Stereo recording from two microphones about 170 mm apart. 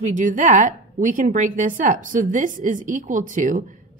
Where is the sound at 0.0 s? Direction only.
50° right (ahead or behind).